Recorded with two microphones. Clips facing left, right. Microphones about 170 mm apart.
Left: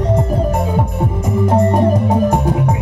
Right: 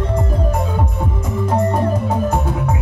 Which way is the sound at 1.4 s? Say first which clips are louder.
Left 4 dB; 20° left (ahead or behind).